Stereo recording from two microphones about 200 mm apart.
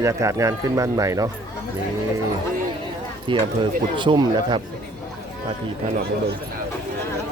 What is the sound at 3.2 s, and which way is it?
Speech, 25° right (ahead or behind).